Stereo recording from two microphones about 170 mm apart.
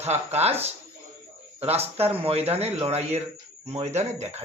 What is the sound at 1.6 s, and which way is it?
Speech, 35° right (ahead or behind).